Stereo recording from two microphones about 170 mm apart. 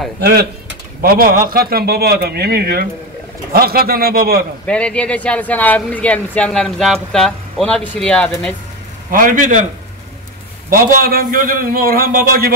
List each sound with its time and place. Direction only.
0.2 s a man's voice: 70° right (ahead or behind)
4.6 s speech: 5° left (ahead or behind)
9.1 s a man's voice: 50° right (ahead or behind)
10.7 s a man's voice: 55° right (ahead or behind)